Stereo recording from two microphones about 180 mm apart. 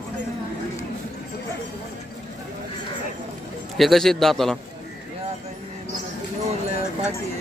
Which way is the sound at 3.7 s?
Centre (ahead or behind).